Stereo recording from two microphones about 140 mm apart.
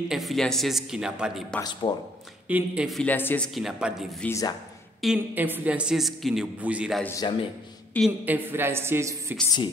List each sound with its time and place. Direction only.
0.1 s a woman's voice: centre (ahead or behind)
1.6 s speech: 30° left (ahead or behind)
2.4 s a man's voice: 10° right (ahead or behind)
3.0 s speech: 15° left (ahead or behind)
3.5 s a woman's voice: centre (ahead or behind)
4.3 s speech: 25° left (ahead or behind)
5.0 s a woman's voice: 10° right (ahead or behind)
7.2 s speech: 35° left (ahead or behind)
8.0 s speech: 10° left (ahead or behind)
8.3 s a man's voice: 15° right (ahead or behind)